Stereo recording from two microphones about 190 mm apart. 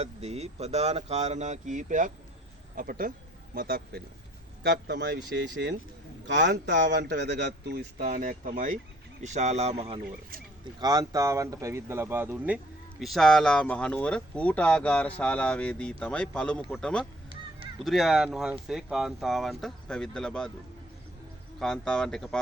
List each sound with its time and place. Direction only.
0.0 s a man's voice: 35° right (ahead or behind); by 5.7 s 55° right (ahead or behind)
6.2 s a man's voice: 70° right (ahead or behind); by 20.5 s 5° left (ahead or behind)
21.6 s speech: 5° left (ahead or behind)